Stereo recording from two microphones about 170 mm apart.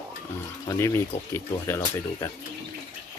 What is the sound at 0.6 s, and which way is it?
Speech, 15° left (ahead or behind).